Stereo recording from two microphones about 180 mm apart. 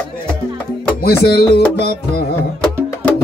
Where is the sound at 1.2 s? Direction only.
60° left (ahead or behind).